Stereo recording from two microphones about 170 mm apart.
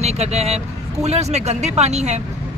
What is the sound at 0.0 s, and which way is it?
Speech, 40° right (ahead or behind).